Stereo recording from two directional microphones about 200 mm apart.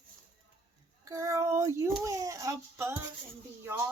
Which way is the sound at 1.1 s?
15° right (ahead or behind).